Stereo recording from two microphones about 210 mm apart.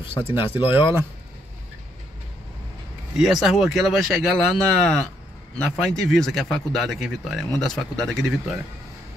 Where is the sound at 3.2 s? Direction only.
Centre (ahead or behind).